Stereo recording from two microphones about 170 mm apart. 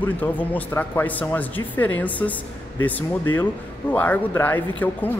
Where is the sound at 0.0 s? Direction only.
10° left (ahead or behind).